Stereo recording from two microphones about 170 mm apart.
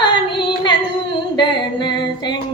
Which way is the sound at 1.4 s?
25° left (ahead or behind).